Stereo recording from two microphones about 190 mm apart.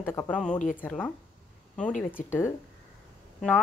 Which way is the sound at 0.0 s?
10° left (ahead or behind).